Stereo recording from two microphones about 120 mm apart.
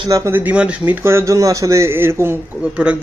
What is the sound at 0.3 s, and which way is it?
Speech, 10° right (ahead or behind).